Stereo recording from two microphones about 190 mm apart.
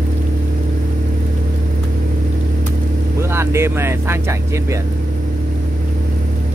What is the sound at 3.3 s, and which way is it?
Speech, 15° right (ahead or behind).